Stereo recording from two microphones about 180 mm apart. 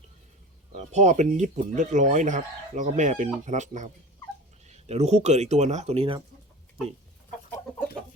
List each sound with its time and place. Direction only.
0.7 s speech: 40° right (ahead or behind)